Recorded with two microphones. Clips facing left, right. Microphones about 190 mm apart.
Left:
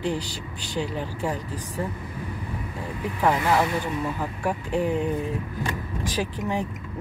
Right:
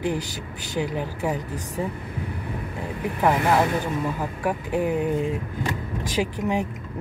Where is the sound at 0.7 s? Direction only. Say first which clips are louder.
Right 2 dB; 10° right (ahead or behind).